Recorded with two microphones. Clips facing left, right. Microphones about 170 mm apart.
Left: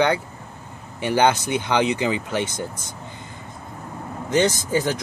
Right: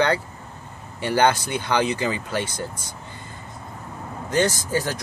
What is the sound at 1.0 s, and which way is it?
Speech, 15° left (ahead or behind).